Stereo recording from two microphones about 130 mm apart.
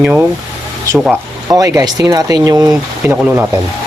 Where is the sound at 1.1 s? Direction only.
25° right (ahead or behind).